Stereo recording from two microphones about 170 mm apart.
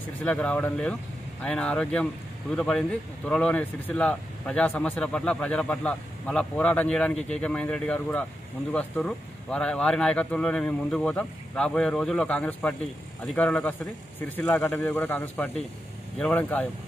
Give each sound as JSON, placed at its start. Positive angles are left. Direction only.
{"t": 0.2, "sound": "speech", "side_deg": 10}